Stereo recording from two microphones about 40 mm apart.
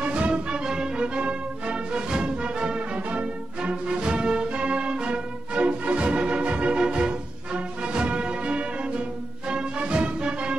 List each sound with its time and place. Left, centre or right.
0.0 s music: right